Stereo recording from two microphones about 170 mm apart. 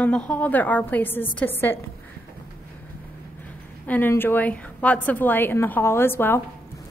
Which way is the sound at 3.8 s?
10° left (ahead or behind).